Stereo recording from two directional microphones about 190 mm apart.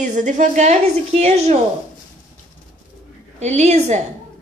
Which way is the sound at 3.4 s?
35° right (ahead or behind).